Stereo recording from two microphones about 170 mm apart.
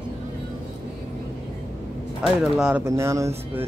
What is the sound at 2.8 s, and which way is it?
Speech, 15° right (ahead or behind).